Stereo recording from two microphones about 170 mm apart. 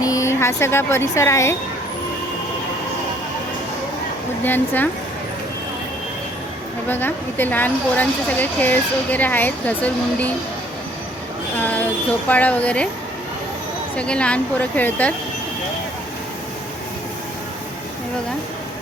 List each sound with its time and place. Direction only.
0.0 s speech: 20° left (ahead or behind)
4.4 s a woman's voice: 10° left (ahead or behind)
6.8 s a woman's voice: 10° left (ahead or behind)
11.5 s a woman's voice: 10° left (ahead or behind)
13.9 s a woman's voice: 5° left (ahead or behind)